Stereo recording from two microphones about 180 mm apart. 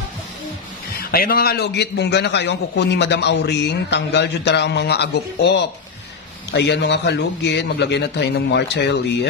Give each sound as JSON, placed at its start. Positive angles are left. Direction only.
{"t": 1.1, "sound": "a man's voice", "side_deg": 55}